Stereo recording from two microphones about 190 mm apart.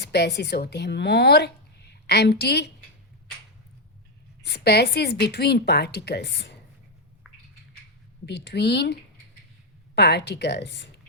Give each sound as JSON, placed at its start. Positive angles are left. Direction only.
{"t": 0.0, "sound": "speech", "side_deg": 60}
{"t": 4.4, "sound": "a woman's voice", "side_deg": 60}
{"t": 8.3, "sound": "a woman's voice", "side_deg": 60}